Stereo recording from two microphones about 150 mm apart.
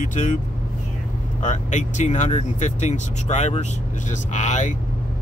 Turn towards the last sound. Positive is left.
turn(degrees=50)  # may be behind; listen again after turning